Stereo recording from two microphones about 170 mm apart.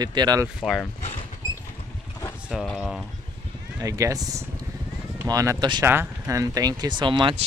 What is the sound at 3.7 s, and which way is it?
Speech, 20° right (ahead or behind).